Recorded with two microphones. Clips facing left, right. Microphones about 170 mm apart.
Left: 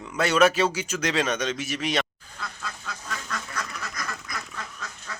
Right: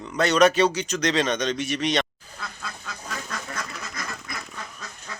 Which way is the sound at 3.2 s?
25° right (ahead or behind).